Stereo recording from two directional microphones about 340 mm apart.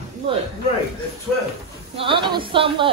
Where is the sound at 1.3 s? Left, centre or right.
Centre.